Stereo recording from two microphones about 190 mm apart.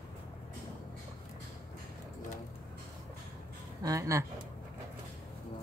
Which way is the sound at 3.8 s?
15° right (ahead or behind).